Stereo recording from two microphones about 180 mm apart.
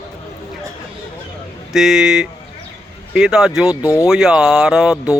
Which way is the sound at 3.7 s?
15° left (ahead or behind).